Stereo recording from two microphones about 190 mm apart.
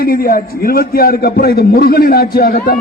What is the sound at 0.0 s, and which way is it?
A man's voice, 50° left (ahead or behind).